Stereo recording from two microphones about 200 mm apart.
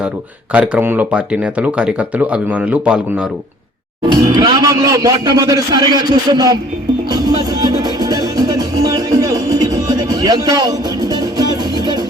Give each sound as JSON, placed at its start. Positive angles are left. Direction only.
{"t": 0.5, "sound": "speech", "side_deg": -5}
{"t": 4.1, "sound": "speech", "side_deg": -20}
{"t": 7.1, "sound": "music", "side_deg": -20}